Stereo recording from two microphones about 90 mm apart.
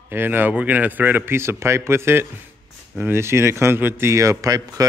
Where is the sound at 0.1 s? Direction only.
25° right (ahead or behind).